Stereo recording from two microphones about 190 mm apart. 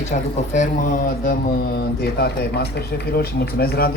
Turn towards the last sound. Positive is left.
turn(degrees=50)  # may be behind; listen again after turning